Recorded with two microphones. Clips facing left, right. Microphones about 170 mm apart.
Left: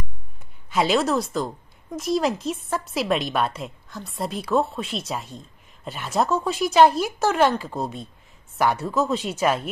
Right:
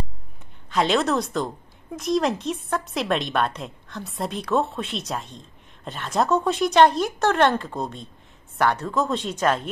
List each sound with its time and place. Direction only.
0.7 s a woman's voice: 5° left (ahead or behind)